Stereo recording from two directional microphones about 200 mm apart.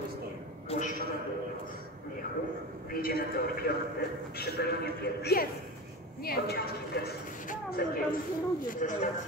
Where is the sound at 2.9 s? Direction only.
45° left (ahead or behind).